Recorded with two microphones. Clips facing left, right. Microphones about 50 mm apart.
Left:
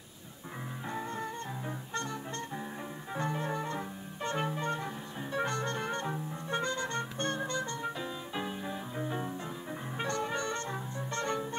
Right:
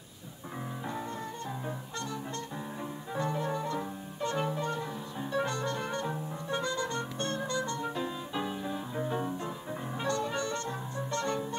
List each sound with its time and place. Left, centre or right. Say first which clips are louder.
2.0 s music: left 2 dB; left
8.5 s music: right 2 dB; centre
9.9 s music: right 1 dB; left